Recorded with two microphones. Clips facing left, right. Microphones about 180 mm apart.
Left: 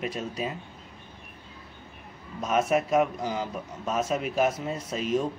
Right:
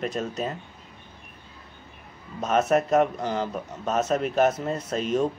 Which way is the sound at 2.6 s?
45° right (ahead or behind).